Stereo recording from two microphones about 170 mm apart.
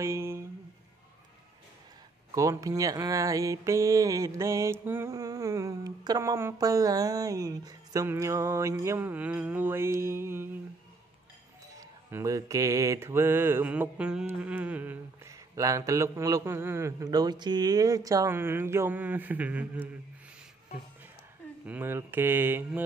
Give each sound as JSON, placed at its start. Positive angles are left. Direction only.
{"t": 0.0, "sound": "a sound", "side_deg": -15}
{"t": 2.3, "sound": "mantra", "side_deg": -20}
{"t": 12.1, "sound": "mantra", "side_deg": -15}
{"t": 21.6, "sound": "mantra", "side_deg": -10}